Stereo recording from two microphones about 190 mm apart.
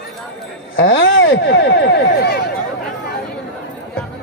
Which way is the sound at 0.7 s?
80° left.